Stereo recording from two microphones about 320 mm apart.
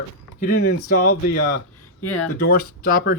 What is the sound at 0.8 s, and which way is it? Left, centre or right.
Speech, left.